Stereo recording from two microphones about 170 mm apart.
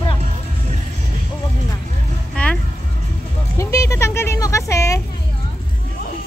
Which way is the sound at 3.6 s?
20° left (ahead or behind).